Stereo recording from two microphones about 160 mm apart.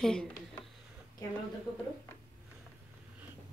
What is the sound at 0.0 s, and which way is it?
Speech, 5° left (ahead or behind).